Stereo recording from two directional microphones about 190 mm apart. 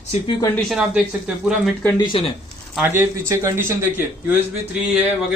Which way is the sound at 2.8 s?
15° right (ahead or behind).